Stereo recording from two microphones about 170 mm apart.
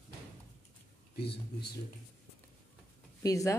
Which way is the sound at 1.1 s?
70° left (ahead or behind).